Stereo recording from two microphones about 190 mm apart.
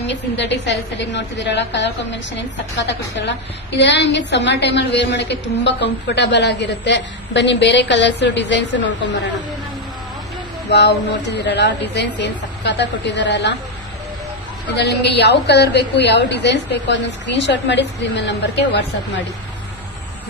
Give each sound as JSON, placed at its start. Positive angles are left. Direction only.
{"t": 0.1, "sound": "a woman's voice", "side_deg": 65}
{"t": 10.7, "sound": "a woman's voice", "side_deg": 65}
{"t": 14.8, "sound": "a woman's voice", "side_deg": 65}